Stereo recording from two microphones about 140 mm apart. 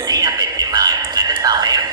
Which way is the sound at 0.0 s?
25° right (ahead or behind).